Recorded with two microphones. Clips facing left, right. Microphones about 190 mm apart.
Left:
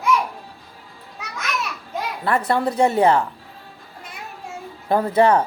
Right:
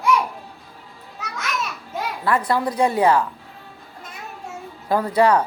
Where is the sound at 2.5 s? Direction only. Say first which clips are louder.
Left 4 dB; 25° left (ahead or behind).